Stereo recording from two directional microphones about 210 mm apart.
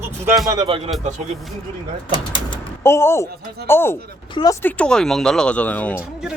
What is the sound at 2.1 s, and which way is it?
Speech, 20° left (ahead or behind).